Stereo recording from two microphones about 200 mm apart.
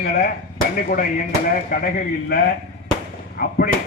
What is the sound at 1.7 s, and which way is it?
Speech, 45° left (ahead or behind).